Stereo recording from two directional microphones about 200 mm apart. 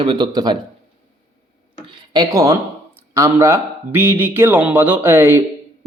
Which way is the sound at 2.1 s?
20° right (ahead or behind).